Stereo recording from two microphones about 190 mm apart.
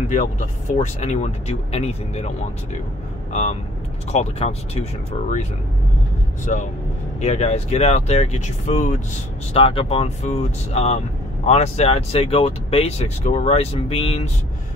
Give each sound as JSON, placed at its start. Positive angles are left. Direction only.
{"t": 0.1, "sound": "speech", "side_deg": 40}
{"t": 4.1, "sound": "speech", "side_deg": 35}
{"t": 6.4, "sound": "speech", "side_deg": 40}